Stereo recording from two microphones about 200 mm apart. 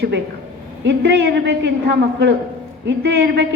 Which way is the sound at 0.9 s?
55° right (ahead or behind).